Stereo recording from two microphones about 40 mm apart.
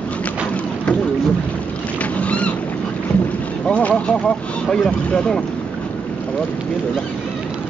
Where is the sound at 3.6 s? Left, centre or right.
Left.